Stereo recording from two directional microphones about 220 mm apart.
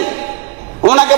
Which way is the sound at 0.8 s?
30° right (ahead or behind).